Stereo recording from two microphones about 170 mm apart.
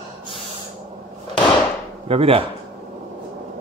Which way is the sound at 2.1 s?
35° right (ahead or behind).